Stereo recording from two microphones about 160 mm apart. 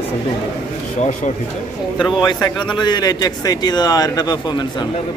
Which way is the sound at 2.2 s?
25° left (ahead or behind).